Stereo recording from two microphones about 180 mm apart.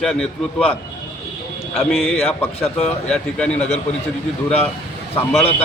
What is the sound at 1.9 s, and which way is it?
Speech, centre (ahead or behind).